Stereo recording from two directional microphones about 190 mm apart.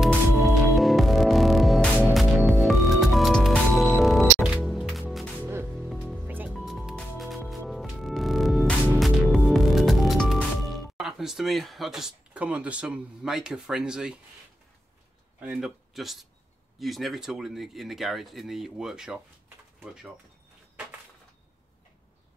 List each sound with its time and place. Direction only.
0.0 s music: centre (ahead or behind)
15.4 s speech: 5° right (ahead or behind)